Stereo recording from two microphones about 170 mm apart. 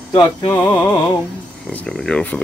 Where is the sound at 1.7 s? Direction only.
5° left (ahead or behind).